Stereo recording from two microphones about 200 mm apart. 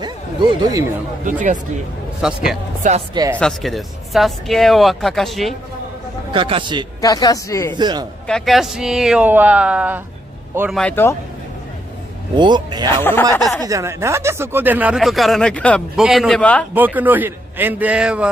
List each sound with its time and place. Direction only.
0.0 s speech: 20° right (ahead or behind)
2.2 s speech: 5° right (ahead or behind)
2.8 s speech: 40° right (ahead or behind)
3.3 s speech: centre (ahead or behind)
6.3 s a man's voice: 25° right (ahead or behind)
7.0 s speech: 20° left (ahead or behind)
7.7 s a man's voice: 20° right (ahead or behind)
8.3 s speech: centre (ahead or behind)
10.7 s speech: 5° left (ahead or behind)
12.4 s a man's voice: 20° right (ahead or behind)
13.0 s speech: 10° left (ahead or behind)
13.6 s speech: 15° right (ahead or behind); by 16.6 s 5° left (ahead or behind)
16.7 s a man's voice: 10° right (ahead or behind)